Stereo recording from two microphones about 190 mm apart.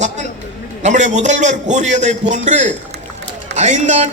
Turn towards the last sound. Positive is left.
turn(degrees=-40)  # may be behind; listen again after turning